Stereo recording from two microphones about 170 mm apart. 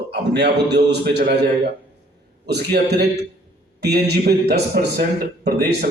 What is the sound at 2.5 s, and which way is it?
A man's voice, 75° right (ahead or behind).